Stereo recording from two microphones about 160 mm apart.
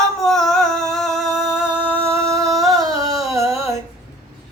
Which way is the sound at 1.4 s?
5° right (ahead or behind).